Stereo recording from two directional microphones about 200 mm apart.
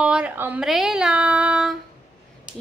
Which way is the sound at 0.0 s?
5° right (ahead or behind).